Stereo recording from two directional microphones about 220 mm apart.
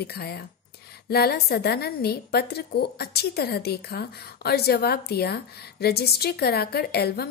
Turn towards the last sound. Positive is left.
turn(degrees=45)  # may be behind; listen again after turning